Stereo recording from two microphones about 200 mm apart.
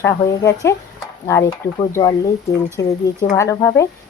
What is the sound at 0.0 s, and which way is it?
Speech, 15° left (ahead or behind).